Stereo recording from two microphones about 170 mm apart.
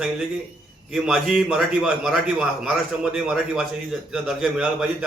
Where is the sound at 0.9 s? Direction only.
5° right (ahead or behind).